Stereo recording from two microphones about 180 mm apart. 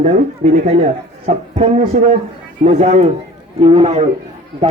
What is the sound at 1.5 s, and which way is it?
A man's voice, 40° right (ahead or behind).